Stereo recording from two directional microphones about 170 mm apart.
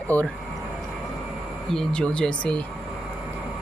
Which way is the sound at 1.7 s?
5° left (ahead or behind).